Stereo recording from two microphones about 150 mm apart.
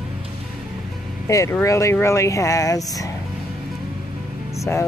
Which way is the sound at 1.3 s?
20° left (ahead or behind).